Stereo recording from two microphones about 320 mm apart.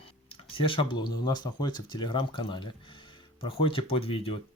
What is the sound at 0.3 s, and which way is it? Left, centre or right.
Speech, centre.